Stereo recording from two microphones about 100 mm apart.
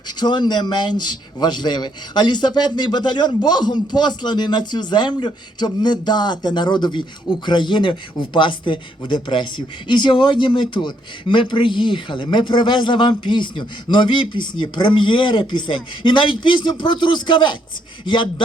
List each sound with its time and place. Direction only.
0.2 s speech: 45° left (ahead or behind)